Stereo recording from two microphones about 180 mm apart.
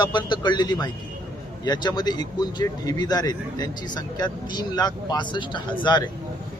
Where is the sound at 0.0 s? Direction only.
25° left (ahead or behind).